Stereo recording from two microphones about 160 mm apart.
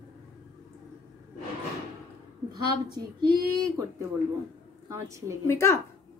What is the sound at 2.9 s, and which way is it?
Speech, 25° right (ahead or behind).